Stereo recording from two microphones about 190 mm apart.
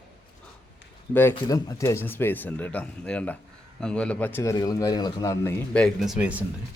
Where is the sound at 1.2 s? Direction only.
15° left (ahead or behind).